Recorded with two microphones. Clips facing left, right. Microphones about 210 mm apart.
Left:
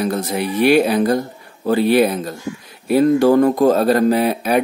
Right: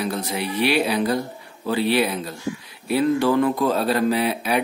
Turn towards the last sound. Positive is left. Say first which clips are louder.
# left 5 dB
turn(degrees=45)  # may be behind; listen again after turning